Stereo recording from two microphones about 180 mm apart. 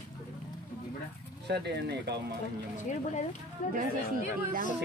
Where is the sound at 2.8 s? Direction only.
45° left (ahead or behind).